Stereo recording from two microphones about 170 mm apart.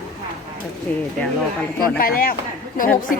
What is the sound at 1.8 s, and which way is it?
Speech, 60° left (ahead or behind).